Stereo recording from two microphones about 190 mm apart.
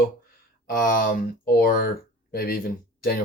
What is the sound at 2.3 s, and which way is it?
Speech, 50° left (ahead or behind).